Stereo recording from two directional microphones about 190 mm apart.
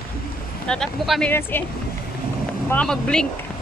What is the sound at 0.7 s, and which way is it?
Speech, centre (ahead or behind).